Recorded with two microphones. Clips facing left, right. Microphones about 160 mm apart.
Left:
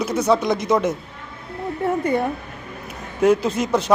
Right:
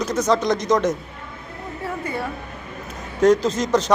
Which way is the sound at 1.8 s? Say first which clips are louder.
Left 7 dB; 20° left (ahead or behind).